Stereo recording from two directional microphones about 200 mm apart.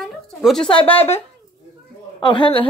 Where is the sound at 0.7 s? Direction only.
25° left (ahead or behind).